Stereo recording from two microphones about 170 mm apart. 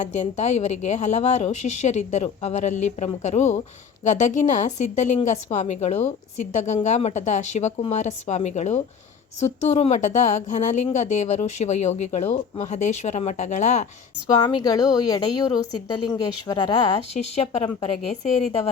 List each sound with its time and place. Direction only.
0.0 s a woman's voice: 45° left (ahead or behind)
14.4 s speech: 25° left (ahead or behind)
17.2 s a woman's voice: 40° left (ahead or behind)